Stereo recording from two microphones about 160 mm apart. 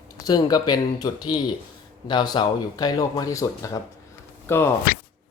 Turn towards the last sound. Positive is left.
turn(degrees=15)  # may be behind; listen again after turning